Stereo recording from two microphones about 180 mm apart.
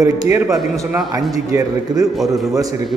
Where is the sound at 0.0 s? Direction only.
20° right (ahead or behind).